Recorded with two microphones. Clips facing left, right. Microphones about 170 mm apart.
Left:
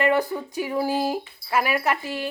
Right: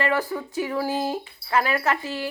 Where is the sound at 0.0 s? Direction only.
15° left (ahead or behind).